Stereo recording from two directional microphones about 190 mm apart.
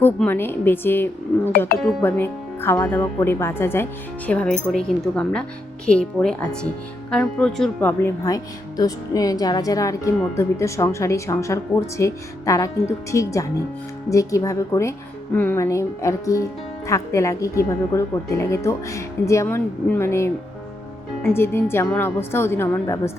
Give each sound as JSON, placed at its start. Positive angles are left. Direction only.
{"t": 0.0, "sound": "speech", "side_deg": 10}